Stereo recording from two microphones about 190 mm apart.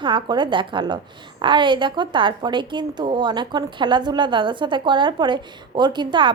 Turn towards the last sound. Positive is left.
turn(degrees=-25)  # may be behind; listen again after turning